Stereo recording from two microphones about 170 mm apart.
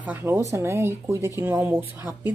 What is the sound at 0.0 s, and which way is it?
Speech, 10° right (ahead or behind).